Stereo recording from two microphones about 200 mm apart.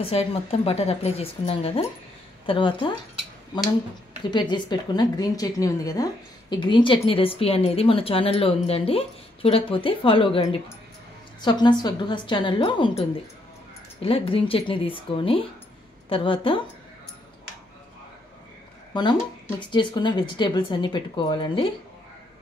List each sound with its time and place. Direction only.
0.0 s a woman's voice: 30° left (ahead or behind)
4.2 s speech: 20° left (ahead or behind)
11.4 s speech: 20° left (ahead or behind)
19.7 s speech: 25° left (ahead or behind)